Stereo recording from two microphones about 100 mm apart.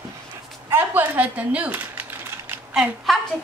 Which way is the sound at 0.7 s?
20° right (ahead or behind).